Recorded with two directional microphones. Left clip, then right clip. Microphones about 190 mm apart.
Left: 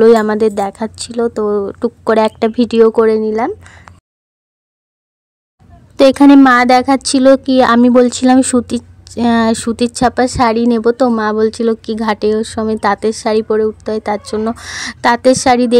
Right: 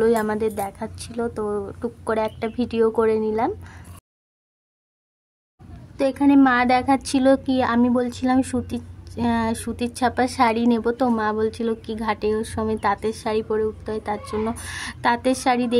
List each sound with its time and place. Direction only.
0.0 s a woman's voice: 40° left (ahead or behind)
5.9 s a woman's voice: 55° left (ahead or behind); by 15.8 s 35° left (ahead or behind)